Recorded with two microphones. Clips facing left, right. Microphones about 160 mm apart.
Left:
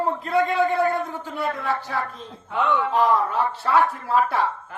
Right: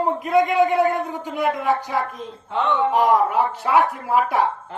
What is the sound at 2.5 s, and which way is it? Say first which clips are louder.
Speech: right 2 dB; 25° right (ahead or behind).